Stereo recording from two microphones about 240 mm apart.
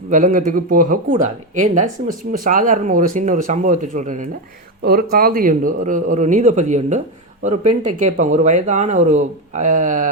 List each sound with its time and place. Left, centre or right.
0.1 s speech: right